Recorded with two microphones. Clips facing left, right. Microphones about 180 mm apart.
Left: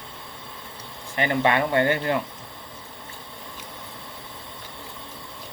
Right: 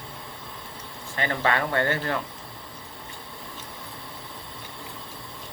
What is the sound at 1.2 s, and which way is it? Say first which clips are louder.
Speech: left 4 dB; 20° left (ahead or behind).